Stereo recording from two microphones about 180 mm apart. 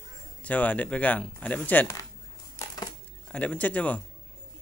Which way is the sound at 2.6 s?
20° left (ahead or behind).